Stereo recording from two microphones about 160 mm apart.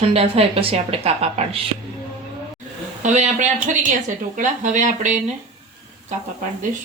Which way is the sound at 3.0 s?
50° right (ahead or behind).